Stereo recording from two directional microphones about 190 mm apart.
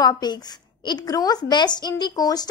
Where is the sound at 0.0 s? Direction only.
20° left (ahead or behind).